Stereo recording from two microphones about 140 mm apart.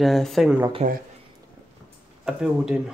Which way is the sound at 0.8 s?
55° right (ahead or behind).